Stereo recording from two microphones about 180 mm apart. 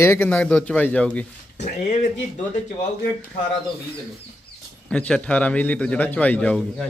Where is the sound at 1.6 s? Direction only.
40° left (ahead or behind).